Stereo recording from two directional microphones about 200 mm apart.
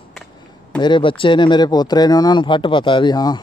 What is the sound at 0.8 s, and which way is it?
Speech, 25° left (ahead or behind).